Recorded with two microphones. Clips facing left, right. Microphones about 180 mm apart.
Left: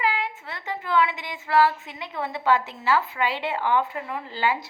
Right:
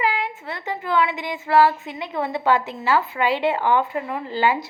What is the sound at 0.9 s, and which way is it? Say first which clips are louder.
A woman's voice: right 2 dB; 50° right (ahead or behind).